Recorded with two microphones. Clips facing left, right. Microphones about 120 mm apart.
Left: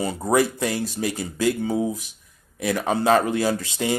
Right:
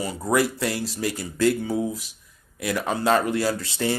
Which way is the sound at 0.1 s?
25° left (ahead or behind).